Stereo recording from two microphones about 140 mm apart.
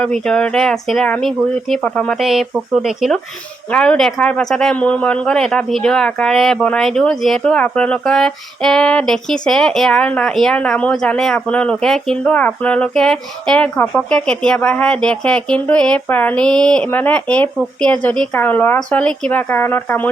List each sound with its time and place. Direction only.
0.0 s speech: 5° left (ahead or behind)